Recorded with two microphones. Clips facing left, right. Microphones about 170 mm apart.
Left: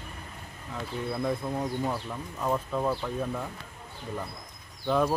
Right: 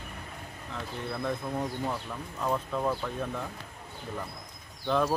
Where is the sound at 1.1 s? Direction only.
10° left (ahead or behind).